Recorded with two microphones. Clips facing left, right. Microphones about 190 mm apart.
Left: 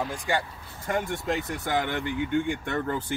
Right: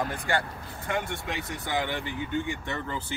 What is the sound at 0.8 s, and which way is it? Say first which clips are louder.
Speech: left 4 dB; 45° left (ahead or behind).